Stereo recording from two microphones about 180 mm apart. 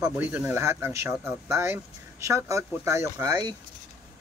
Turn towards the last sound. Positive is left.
turn(degrees=-15)  # may be behind; listen again after turning